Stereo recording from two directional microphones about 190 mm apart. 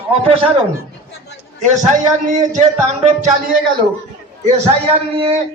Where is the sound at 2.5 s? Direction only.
40° right (ahead or behind).